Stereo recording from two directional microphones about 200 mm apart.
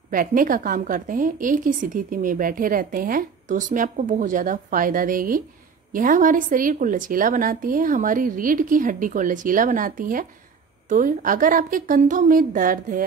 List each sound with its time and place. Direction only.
0.1 s a woman's voice: 45° right (ahead or behind)